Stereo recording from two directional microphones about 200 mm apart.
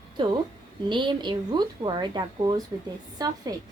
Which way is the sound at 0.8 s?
25° right (ahead or behind).